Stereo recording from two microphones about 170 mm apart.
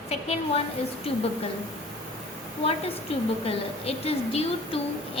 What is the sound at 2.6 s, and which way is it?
A woman's voice, 35° left (ahead or behind).